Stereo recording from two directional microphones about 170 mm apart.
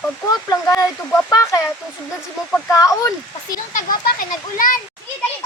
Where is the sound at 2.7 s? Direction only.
20° left (ahead or behind).